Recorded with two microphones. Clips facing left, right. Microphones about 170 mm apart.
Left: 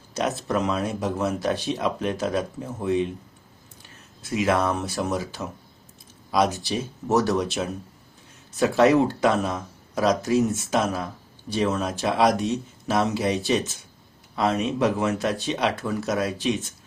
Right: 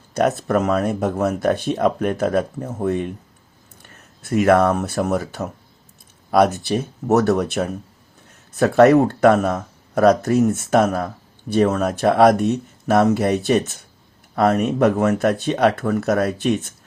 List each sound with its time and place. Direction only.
0.1 s speech: 55° right (ahead or behind)